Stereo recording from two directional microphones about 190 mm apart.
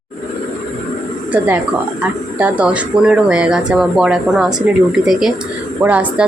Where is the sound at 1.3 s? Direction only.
10° right (ahead or behind).